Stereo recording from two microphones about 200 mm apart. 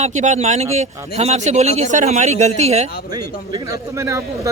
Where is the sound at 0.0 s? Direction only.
35° right (ahead or behind).